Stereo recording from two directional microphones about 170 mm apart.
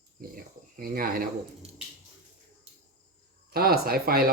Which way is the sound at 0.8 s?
55° right (ahead or behind).